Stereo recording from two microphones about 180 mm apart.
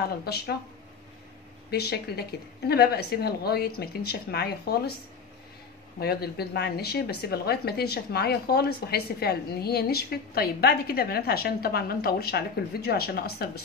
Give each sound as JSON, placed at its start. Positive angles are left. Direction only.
{"t": 0.2, "sound": "speech", "side_deg": 60}
{"t": 1.7, "sound": "speech", "side_deg": 65}
{"t": 5.9, "sound": "speech", "side_deg": 60}